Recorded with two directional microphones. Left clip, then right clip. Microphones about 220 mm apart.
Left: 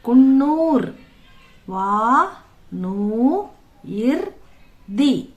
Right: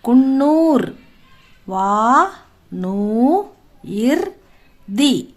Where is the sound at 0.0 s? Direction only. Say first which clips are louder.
Right 1 dB; 45° right (ahead or behind).